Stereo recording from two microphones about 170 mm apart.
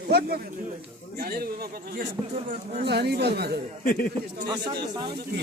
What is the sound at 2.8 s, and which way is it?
Speech, 75° right (ahead or behind).